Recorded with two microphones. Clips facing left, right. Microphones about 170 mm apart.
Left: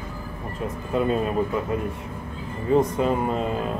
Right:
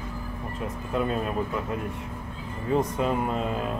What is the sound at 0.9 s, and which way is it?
Speech, centre (ahead or behind).